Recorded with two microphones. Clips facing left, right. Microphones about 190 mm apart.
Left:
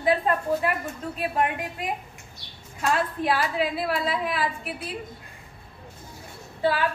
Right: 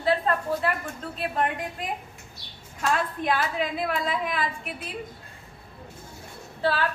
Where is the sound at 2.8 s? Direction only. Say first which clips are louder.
Left 1 dB; 5° left (ahead or behind).